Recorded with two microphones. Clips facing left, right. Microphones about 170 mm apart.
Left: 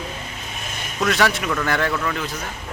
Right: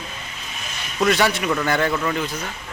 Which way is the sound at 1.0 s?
Centre (ahead or behind).